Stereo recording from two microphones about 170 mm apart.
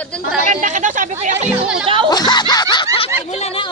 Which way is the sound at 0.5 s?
45° right (ahead or behind).